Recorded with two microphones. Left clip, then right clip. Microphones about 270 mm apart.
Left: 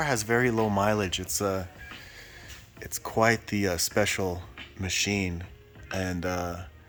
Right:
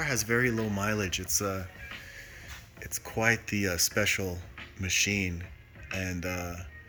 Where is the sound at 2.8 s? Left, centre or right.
Centre.